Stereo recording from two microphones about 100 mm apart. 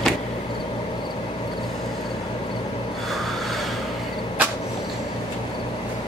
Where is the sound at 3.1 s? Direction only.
Centre (ahead or behind).